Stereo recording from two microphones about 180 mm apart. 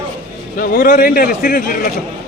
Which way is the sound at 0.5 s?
50° left (ahead or behind).